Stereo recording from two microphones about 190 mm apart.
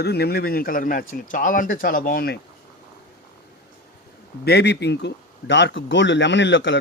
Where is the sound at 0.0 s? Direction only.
60° left (ahead or behind).